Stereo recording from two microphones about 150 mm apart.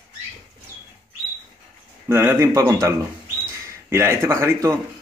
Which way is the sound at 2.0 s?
15° right (ahead or behind).